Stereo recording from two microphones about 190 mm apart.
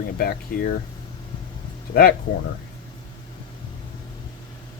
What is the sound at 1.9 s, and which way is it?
Speech, 55° left (ahead or behind).